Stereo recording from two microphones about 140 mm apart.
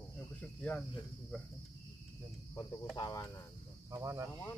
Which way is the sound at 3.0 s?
25° left (ahead or behind).